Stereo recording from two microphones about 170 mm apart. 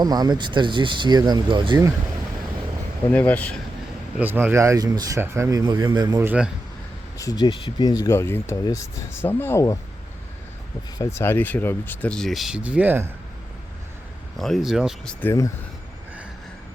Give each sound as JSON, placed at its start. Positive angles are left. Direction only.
{"t": 0.0, "sound": "speech", "side_deg": -25}
{"t": 3.1, "sound": "speech", "side_deg": 10}
{"t": 4.2, "sound": "speech", "side_deg": -10}
{"t": 6.2, "sound": "a man's voice", "side_deg": -5}
{"t": 7.2, "sound": "speech", "side_deg": 20}
{"t": 11.2, "sound": "speech", "side_deg": 10}
{"t": 14.3, "sound": "speech", "side_deg": 0}
{"t": 15.2, "sound": "speech", "side_deg": 15}